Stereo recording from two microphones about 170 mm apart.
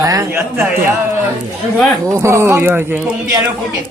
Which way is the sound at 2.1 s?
15° right (ahead or behind).